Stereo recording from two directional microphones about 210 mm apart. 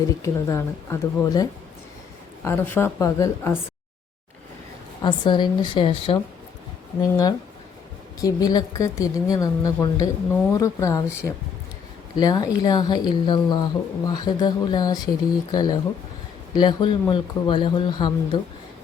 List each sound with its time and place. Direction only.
0.2 s a woman's voice: 15° left (ahead or behind)
5.0 s a woman's voice: 20° left (ahead or behind)